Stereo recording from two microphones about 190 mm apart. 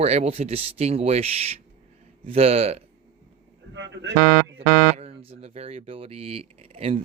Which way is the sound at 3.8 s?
70° right (ahead or behind).